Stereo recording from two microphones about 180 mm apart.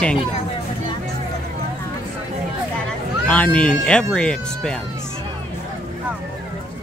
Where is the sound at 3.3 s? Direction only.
10° left (ahead or behind).